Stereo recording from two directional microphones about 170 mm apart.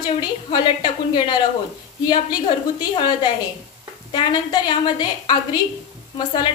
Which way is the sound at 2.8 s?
25° left (ahead or behind).